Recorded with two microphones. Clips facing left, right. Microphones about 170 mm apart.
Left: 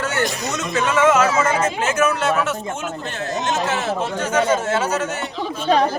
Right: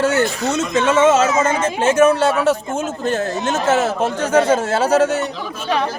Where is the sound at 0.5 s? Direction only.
30° right (ahead or behind).